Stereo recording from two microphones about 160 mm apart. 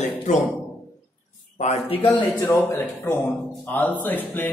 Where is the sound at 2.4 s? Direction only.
15° left (ahead or behind).